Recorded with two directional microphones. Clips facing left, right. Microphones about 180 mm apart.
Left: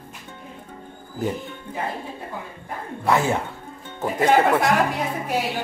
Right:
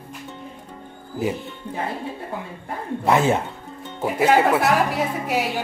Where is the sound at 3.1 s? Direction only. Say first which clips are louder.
Right 2 dB; 20° right (ahead or behind).